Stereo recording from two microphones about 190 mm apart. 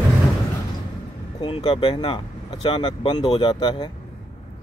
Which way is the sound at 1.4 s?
25° left (ahead or behind).